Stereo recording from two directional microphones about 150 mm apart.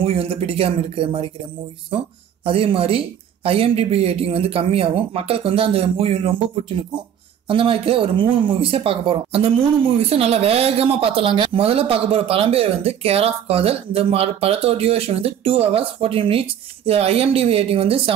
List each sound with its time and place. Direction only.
0.0 s speech: 40° right (ahead or behind)
2.4 s speech: 35° right (ahead or behind)
7.4 s speech: 35° right (ahead or behind)